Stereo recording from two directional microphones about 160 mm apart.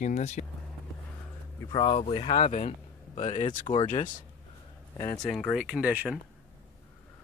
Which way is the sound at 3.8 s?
50° left (ahead or behind).